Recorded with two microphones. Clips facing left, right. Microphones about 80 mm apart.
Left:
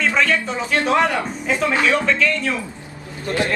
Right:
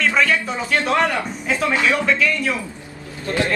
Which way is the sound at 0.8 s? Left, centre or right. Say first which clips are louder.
Left 2 dB; centre.